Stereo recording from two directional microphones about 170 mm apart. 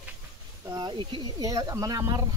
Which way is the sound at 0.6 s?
25° right (ahead or behind).